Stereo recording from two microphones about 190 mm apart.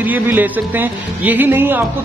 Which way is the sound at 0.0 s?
10° right (ahead or behind).